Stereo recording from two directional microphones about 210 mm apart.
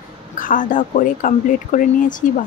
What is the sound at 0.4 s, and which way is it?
Speech, 40° left (ahead or behind).